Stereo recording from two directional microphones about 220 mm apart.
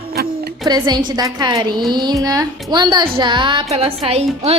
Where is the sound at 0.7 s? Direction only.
20° right (ahead or behind).